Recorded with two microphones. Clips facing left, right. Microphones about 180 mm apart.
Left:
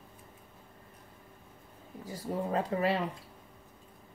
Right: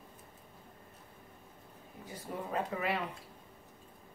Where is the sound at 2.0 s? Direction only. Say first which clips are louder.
Left 6 dB; 35° left (ahead or behind).